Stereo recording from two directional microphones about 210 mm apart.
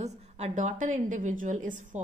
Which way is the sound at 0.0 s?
35° right (ahead or behind).